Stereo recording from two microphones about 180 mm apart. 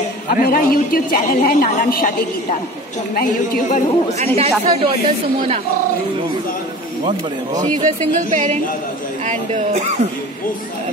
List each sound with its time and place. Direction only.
0.4 s a woman's voice: 55° left (ahead or behind)
4.4 s speech: 30° right (ahead or behind)
7.8 s speech: 45° right (ahead or behind)